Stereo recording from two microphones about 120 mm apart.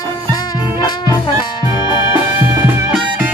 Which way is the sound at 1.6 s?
30° right (ahead or behind).